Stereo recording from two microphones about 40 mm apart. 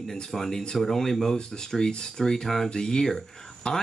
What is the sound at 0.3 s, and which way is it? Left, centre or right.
Speech, centre.